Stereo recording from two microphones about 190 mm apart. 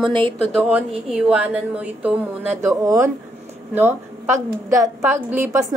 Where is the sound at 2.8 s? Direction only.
15° right (ahead or behind).